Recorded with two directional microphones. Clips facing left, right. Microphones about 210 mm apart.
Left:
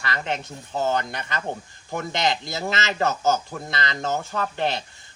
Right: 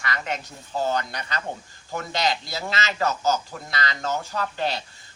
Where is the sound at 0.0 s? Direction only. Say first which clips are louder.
Left 2 dB; 30° left (ahead or behind).